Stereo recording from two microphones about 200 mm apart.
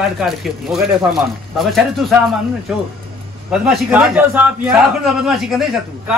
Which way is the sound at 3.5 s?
5° right (ahead or behind).